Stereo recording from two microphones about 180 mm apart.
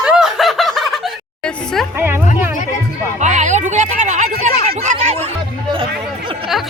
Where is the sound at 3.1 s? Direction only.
40° right (ahead or behind).